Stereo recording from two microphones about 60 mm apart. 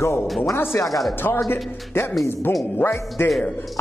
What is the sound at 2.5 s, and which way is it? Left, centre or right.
Speech, left.